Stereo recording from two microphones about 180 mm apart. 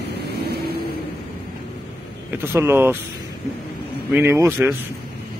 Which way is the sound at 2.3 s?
10° right (ahead or behind).